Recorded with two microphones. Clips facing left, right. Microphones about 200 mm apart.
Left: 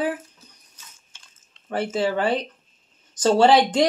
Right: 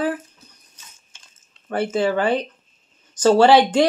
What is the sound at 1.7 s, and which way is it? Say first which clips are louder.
Speech: right 3 dB; 30° left (ahead or behind).